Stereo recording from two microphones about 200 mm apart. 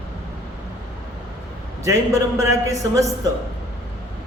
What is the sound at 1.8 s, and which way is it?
A man's voice, 15° right (ahead or behind).